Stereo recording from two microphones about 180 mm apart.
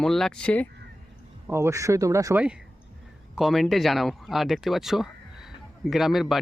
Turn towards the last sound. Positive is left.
turn(degrees=0)  # may be behind; listen again after turning